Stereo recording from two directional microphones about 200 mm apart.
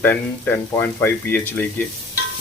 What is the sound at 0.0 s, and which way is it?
Speech, 10° left (ahead or behind).